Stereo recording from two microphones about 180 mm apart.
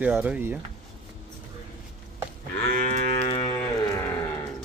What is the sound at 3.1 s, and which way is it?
Moo, 30° left (ahead or behind).